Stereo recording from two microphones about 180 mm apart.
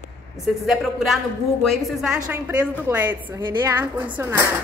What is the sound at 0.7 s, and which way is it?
A woman's voice, centre (ahead or behind).